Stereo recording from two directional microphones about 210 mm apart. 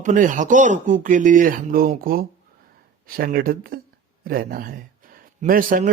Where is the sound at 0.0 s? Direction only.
40° right (ahead or behind).